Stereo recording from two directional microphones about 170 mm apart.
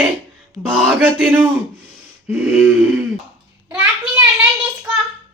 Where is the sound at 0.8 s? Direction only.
Centre (ahead or behind).